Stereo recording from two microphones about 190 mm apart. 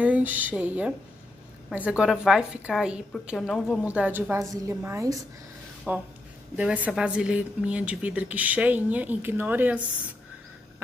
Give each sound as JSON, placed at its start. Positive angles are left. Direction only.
{"t": 0.0, "sound": "a woman's voice", "side_deg": -10}